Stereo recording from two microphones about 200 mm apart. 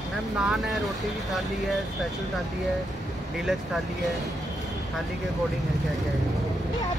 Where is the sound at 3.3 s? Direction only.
Centre (ahead or behind).